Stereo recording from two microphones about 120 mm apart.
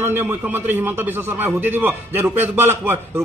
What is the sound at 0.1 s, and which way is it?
Speech, 15° right (ahead or behind).